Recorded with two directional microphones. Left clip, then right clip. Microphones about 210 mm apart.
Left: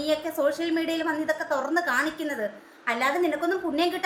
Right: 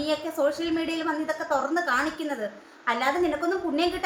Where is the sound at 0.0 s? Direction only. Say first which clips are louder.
Even; 5° right (ahead or behind).